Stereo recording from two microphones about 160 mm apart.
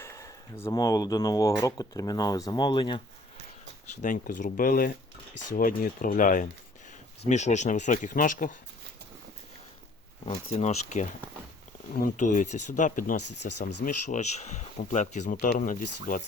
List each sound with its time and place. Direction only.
0.0 s a sound: 20° left (ahead or behind)
0.6 s speech: 25° left (ahead or behind)
4.0 s speech: 55° left (ahead or behind)
10.2 s speech: 40° left (ahead or behind)
11.9 s speech: 55° left (ahead or behind)